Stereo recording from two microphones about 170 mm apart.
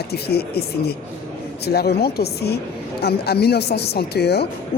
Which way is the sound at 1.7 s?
70° left (ahead or behind).